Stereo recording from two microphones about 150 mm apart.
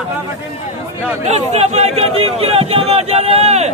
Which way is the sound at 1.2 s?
50° right (ahead or behind).